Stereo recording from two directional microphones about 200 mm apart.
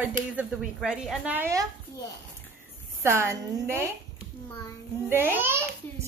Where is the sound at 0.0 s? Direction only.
5° right (ahead or behind).